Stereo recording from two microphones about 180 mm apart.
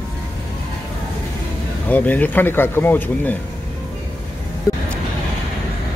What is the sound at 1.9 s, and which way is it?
Speech, 10° left (ahead or behind).